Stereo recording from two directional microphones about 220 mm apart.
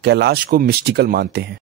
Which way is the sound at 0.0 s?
50° right (ahead or behind).